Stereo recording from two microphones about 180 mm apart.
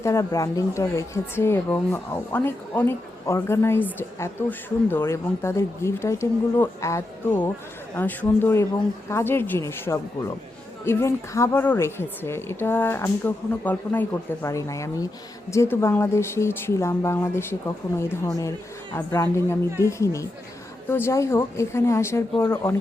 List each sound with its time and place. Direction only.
0.0 s a woman's voice: 15° left (ahead or behind)